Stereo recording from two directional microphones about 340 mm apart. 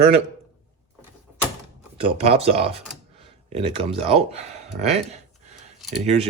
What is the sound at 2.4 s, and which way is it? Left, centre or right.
Speech, centre.